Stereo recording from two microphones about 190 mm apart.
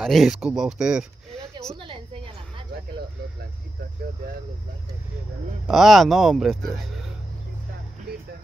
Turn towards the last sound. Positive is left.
turn(degrees=0)  # may be behind; listen again after turning